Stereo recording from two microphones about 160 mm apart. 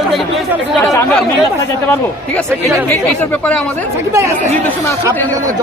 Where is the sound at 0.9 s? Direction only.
15° left (ahead or behind).